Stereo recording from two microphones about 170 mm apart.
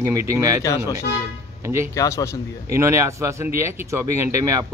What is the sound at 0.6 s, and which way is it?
Speech, 20° left (ahead or behind).